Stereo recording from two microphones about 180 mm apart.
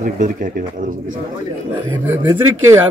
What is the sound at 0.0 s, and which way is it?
Speech, 50° right (ahead or behind).